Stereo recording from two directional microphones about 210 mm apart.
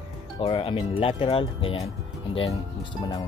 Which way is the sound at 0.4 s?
25° left (ahead or behind).